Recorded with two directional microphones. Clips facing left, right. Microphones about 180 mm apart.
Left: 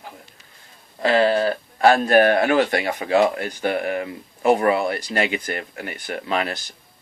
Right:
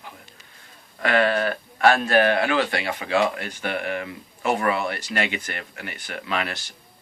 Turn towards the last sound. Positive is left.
turn(degrees=40)  # may be behind; listen again after turning